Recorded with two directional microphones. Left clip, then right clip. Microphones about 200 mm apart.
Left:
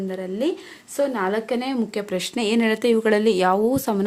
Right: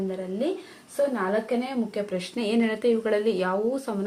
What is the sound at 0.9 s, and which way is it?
A woman's voice, 45° left (ahead or behind).